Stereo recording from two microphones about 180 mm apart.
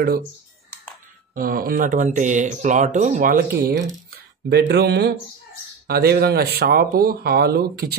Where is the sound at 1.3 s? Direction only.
55° right (ahead or behind).